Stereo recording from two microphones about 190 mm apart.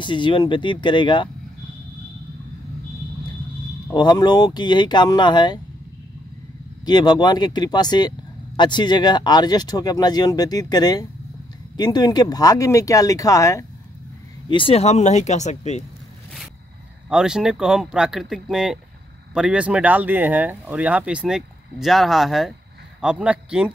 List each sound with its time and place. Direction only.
0.0 s speech: 25° left (ahead or behind)
3.9 s speech: 25° left (ahead or behind)
6.9 s speech: 20° left (ahead or behind)
14.5 s speech: 30° left (ahead or behind)
17.1 s a man's voice: 5° right (ahead or behind)